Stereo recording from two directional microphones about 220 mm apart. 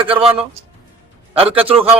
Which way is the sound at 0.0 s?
25° right (ahead or behind).